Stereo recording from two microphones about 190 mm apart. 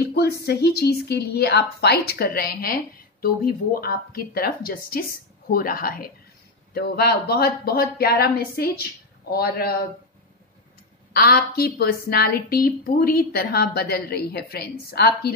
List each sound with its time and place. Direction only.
0.0 s a woman's voice: 55° left (ahead or behind)
11.1 s a woman's voice: 50° left (ahead or behind)